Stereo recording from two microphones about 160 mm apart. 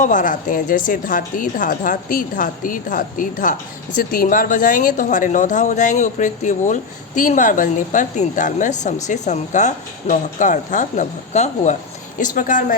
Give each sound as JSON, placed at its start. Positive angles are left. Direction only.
{"t": 0.0, "sound": "a woman's voice", "side_deg": 55}